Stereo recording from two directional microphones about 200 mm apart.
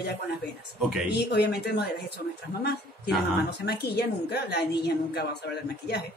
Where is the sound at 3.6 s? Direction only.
55° left (ahead or behind).